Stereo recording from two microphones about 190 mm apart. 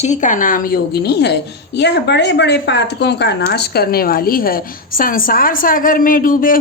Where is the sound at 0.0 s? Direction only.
40° left (ahead or behind).